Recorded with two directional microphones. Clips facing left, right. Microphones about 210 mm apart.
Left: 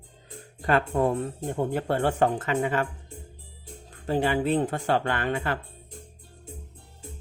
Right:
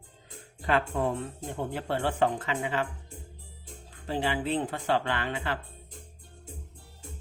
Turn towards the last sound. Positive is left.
turn(degrees=45)  # may be behind; listen again after turning